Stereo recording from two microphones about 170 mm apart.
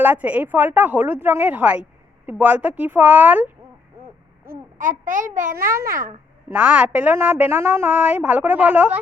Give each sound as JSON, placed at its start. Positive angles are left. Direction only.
{"t": 0.0, "sound": "a woman's voice", "side_deg": -10}
{"t": 4.8, "sound": "a child's voice", "side_deg": -50}
{"t": 6.5, "sound": "a woman's voice", "side_deg": -5}